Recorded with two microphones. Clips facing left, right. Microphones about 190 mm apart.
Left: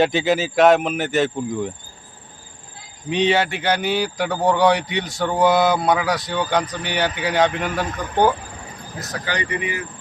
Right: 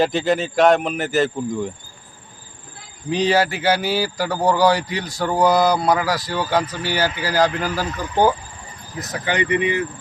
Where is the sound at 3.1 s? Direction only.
Centre (ahead or behind).